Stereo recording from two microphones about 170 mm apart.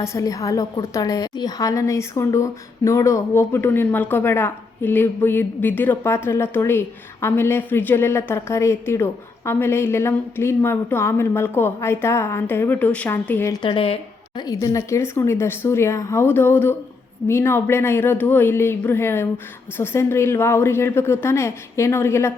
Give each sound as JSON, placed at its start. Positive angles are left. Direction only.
{"t": 0.0, "sound": "a woman's voice", "side_deg": 20}
{"t": 13.5, "sound": "a woman's voice", "side_deg": 30}